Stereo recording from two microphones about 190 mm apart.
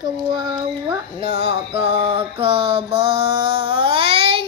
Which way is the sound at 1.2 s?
30° right (ahead or behind).